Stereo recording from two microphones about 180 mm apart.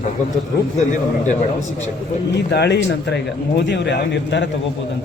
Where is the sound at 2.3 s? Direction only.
70° left (ahead or behind).